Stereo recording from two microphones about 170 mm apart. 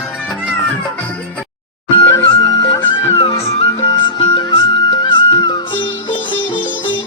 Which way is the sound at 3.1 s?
35° left (ahead or behind).